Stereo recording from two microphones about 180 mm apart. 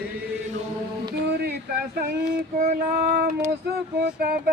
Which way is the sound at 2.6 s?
40° right (ahead or behind).